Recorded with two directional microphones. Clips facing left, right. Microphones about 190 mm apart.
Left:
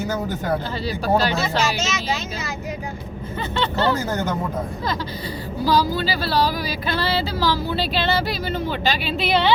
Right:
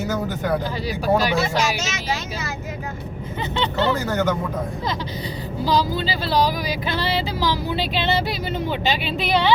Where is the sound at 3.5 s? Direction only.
20° right (ahead or behind).